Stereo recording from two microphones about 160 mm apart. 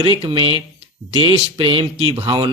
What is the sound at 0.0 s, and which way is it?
A man's voice, 30° right (ahead or behind).